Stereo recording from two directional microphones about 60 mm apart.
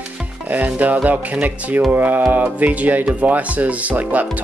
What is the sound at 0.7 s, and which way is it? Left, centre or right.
Speech, right.